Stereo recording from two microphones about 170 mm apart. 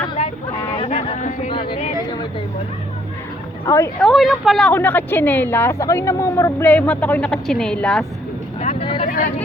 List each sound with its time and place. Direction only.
0.2 s a sound: 40° left (ahead or behind)
1.5 s speech: 30° left (ahead or behind)
3.7 s a woman's voice: 15° left (ahead or behind)
4.0 s a woman's voice: centre (ahead or behind)
8.6 s vehicle: 35° left (ahead or behind)
9.0 s vehicle: 55° left (ahead or behind)